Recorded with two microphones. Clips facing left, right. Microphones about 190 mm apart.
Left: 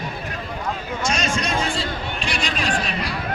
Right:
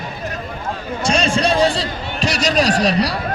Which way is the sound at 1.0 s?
30° right (ahead or behind).